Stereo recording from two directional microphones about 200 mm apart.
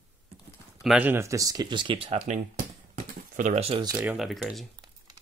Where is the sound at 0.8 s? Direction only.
10° right (ahead or behind); by 2.2 s 30° right (ahead or behind).